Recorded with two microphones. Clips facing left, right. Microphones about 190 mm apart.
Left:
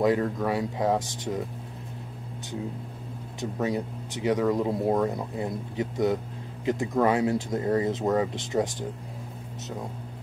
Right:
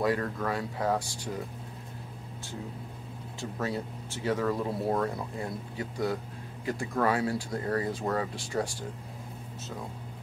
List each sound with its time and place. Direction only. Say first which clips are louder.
0.0 s speech: left 5 dB; 20° left (ahead or behind)
3.3 s speech: left 5 dB; 15° left (ahead or behind)